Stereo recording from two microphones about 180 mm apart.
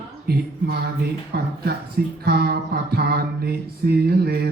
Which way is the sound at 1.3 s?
60° right (ahead or behind).